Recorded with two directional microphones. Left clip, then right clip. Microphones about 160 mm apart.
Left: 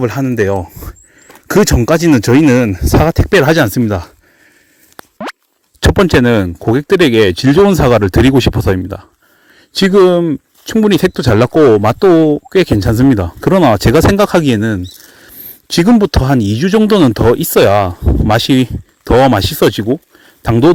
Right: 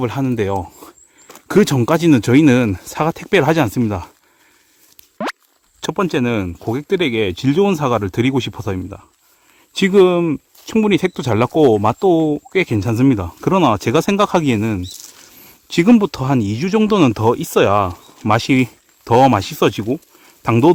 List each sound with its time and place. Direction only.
0.0 s speech: 20° left (ahead or behind)
5.3 s a sound: 10° right (ahead or behind)
5.8 s speech: 45° left (ahead or behind)
10.0 s speech: 20° left (ahead or behind)
10.8 s speech: 30° left (ahead or behind)